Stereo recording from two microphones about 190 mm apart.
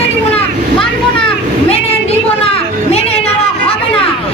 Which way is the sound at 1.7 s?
30° left (ahead or behind).